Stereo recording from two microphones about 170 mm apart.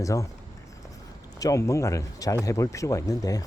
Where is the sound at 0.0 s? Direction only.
20° left (ahead or behind).